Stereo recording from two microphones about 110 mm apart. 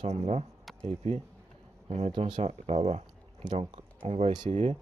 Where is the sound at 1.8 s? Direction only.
75° right (ahead or behind).